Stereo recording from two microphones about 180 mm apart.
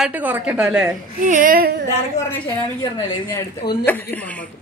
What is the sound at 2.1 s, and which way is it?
Speech, 15° left (ahead or behind).